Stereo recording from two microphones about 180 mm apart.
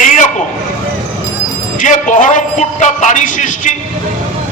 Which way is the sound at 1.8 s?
45° left (ahead or behind).